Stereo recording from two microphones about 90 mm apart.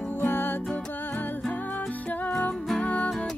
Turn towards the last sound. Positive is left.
turn(degrees=15)  # may be behind; listen again after turning